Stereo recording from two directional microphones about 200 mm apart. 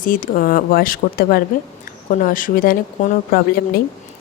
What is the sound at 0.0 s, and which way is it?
A woman's voice, 45° left (ahead or behind).